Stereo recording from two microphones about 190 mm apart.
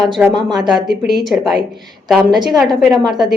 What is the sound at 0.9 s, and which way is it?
Speech, 60° right (ahead or behind).